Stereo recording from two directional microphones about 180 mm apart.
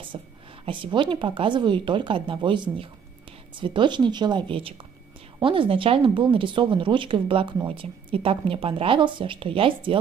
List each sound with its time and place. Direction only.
0.1 s speech: 30° right (ahead or behind)